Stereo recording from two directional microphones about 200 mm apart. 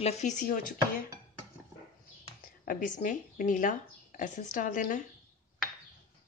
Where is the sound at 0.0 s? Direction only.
35° left (ahead or behind).